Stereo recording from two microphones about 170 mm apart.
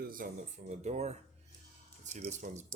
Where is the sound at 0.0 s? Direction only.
55° right (ahead or behind).